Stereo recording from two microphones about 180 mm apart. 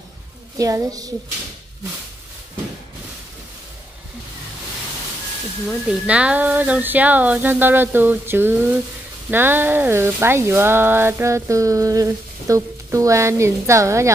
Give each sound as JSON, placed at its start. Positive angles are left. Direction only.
{"t": 0.6, "sound": "a woman's voice", "side_deg": -20}
{"t": 5.7, "sound": "speech", "side_deg": -5}